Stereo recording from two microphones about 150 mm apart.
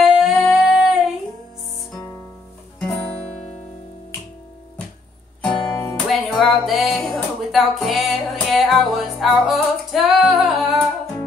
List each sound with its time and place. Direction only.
0.0 s singing: centre (ahead or behind)
5.5 s music: 20° left (ahead or behind)
6.0 s music: centre (ahead or behind)
10.0 s singing: centre (ahead or behind)